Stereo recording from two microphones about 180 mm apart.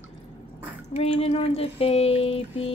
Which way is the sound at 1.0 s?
35° left (ahead or behind).